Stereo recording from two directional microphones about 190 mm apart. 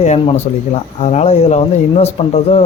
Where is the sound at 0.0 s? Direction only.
35° left (ahead or behind).